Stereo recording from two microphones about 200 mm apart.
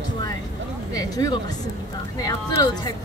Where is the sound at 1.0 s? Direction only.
20° left (ahead or behind).